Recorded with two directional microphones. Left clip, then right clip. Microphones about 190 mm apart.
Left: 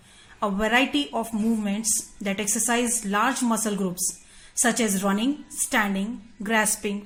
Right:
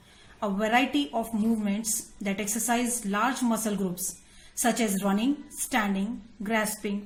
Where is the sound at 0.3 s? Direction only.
35° left (ahead or behind).